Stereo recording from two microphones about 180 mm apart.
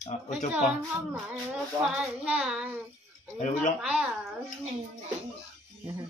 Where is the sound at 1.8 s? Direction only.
5° right (ahead or behind).